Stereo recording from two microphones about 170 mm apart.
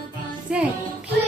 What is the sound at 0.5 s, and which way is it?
Music, 5° right (ahead or behind).